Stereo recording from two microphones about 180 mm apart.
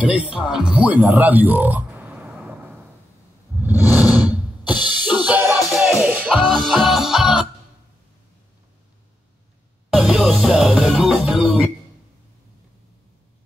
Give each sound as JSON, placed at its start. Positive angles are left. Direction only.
{"t": 0.0, "sound": "speech", "side_deg": -5}
{"t": 3.6, "sound": "a sound", "side_deg": -10}
{"t": 4.2, "sound": "drum", "side_deg": 25}
{"t": 5.0, "sound": "music", "side_deg": -10}
{"t": 9.9, "sound": "music", "side_deg": 0}